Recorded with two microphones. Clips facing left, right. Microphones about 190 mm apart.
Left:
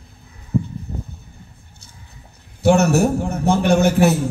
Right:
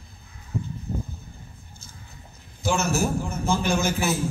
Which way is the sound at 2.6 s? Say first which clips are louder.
Left 10 dB; 65° left (ahead or behind).